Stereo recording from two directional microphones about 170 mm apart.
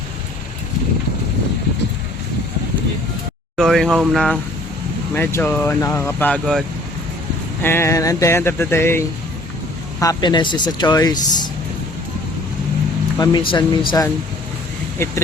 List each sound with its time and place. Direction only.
3.6 s speech: centre (ahead or behind)
5.1 s speech: 10° left (ahead or behind)
13.1 s speech: 25° left (ahead or behind)